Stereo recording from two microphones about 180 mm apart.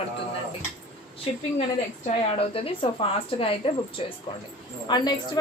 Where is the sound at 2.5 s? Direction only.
30° left (ahead or behind).